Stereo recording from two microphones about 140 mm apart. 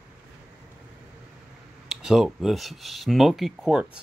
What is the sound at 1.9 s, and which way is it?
Speech, 5° right (ahead or behind).